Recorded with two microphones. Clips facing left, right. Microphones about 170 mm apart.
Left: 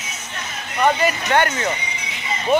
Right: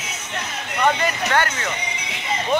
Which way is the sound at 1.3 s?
20° left (ahead or behind).